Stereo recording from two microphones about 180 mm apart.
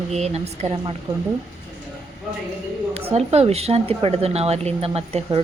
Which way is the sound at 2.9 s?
35° right (ahead or behind).